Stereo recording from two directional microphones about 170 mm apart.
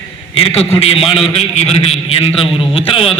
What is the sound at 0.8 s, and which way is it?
A man's voice, 35° left (ahead or behind).